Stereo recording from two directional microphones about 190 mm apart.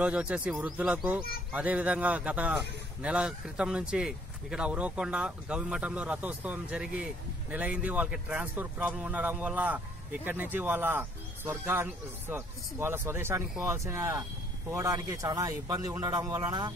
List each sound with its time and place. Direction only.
0.0 s speech: 5° right (ahead or behind)